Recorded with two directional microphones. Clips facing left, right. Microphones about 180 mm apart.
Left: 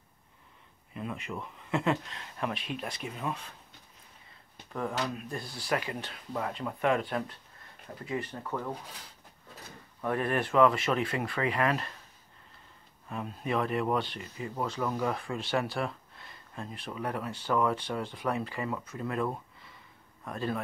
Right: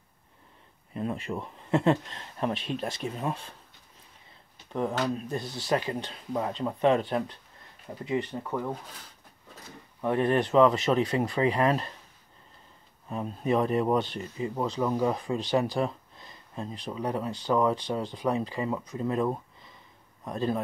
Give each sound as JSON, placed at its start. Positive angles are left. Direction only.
{"t": 0.9, "sound": "speech", "side_deg": -35}
{"t": 5.3, "sound": "speech", "side_deg": -20}
{"t": 10.0, "sound": "speech", "side_deg": -25}
{"t": 13.1, "sound": "speech", "side_deg": -30}
{"t": 14.5, "sound": "speech", "side_deg": -15}
{"t": 15.6, "sound": "speech", "side_deg": -40}
{"t": 16.2, "sound": "speech", "side_deg": -15}